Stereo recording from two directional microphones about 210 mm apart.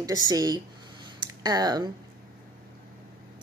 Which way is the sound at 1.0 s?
20° right (ahead or behind).